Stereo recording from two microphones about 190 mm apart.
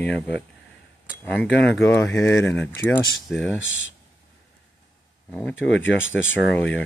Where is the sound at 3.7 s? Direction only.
90° left.